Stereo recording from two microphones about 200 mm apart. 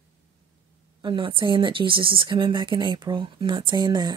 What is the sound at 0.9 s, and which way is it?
Speech, 25° right (ahead or behind).